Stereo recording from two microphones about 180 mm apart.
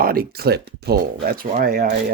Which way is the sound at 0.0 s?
55° right (ahead or behind).